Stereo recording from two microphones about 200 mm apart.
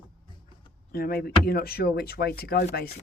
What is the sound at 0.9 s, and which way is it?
Speech, 50° left (ahead or behind).